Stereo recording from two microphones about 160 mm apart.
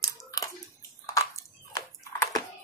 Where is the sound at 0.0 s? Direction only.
20° left (ahead or behind).